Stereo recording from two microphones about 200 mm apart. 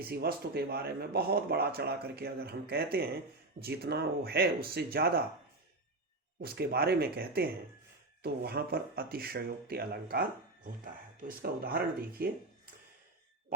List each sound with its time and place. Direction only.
0.0 s speech: 50° right (ahead or behind)
6.4 s speech: 50° right (ahead or behind)